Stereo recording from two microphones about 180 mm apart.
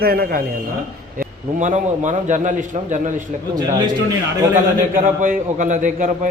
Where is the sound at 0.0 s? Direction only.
55° right (ahead or behind).